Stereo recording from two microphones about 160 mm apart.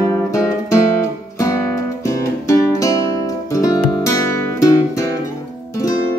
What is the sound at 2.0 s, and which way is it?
Music, 20° left (ahead or behind).